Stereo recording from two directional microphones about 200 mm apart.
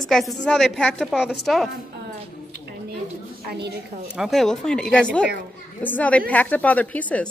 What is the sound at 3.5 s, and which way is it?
Speech, 55° right (ahead or behind).